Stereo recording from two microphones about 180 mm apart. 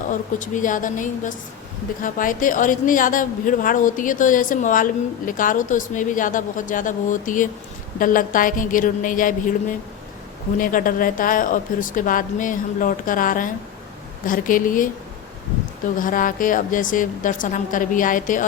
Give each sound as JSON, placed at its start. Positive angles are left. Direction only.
{"t": 0.1, "sound": "a woman's voice", "side_deg": 45}
{"t": 16.0, "sound": "a woman's voice", "side_deg": 50}